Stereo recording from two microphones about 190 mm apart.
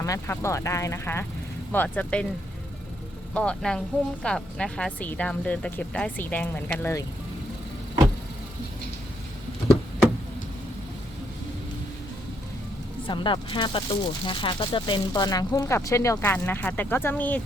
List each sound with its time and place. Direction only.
0.0 s speech: 15° left (ahead or behind)
3.3 s speech: 5° left (ahead or behind)
13.1 s speech: 25° left (ahead or behind); by 17.4 s 10° left (ahead or behind)